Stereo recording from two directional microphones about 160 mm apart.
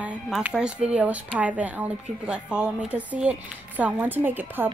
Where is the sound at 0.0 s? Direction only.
10° right (ahead or behind).